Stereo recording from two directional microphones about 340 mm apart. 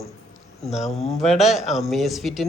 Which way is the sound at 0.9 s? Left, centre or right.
Centre.